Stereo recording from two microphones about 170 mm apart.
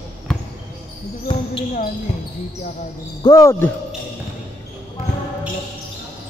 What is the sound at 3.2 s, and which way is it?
Speech, 20° left (ahead or behind).